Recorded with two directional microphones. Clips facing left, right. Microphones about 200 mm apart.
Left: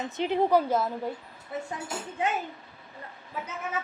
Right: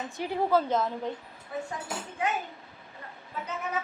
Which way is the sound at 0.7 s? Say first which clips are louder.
Left 1 dB; 5° left (ahead or behind).